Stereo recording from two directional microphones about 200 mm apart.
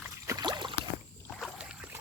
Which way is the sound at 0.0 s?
15° right (ahead or behind).